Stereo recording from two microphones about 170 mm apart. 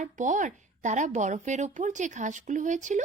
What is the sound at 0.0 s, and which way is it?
Speech, 45° right (ahead or behind).